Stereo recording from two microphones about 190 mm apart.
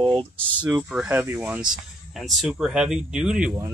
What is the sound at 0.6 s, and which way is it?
Speech, 5° right (ahead or behind).